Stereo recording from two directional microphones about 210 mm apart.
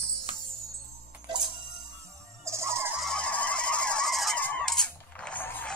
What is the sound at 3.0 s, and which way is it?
Honk, 5° left (ahead or behind).